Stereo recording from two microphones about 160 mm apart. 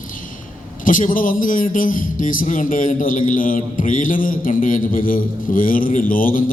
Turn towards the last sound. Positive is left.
turn(degrees=60)  # may be behind; listen again after turning